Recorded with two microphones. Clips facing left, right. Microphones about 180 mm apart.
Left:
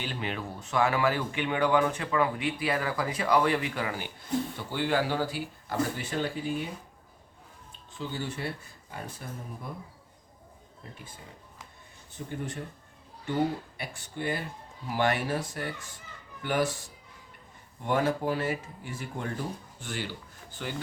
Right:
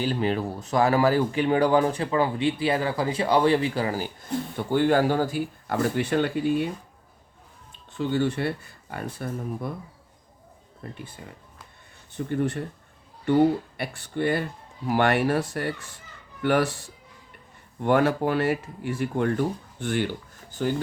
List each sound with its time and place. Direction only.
0.0 s speech: 40° right (ahead or behind)
4.5 s speech: 50° right (ahead or behind); by 6.7 s 65° right (ahead or behind)
7.9 s speech: 65° right (ahead or behind)
12.1 s speech: 65° right (ahead or behind)
13.7 s speech: 65° right (ahead or behind)
17.8 s speech: 70° right (ahead or behind)
20.5 s speech: 45° right (ahead or behind)